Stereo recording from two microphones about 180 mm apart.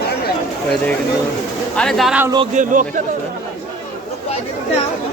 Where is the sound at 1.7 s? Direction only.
5° left (ahead or behind).